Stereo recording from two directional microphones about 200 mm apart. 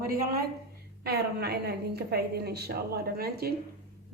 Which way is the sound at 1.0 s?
55° right (ahead or behind).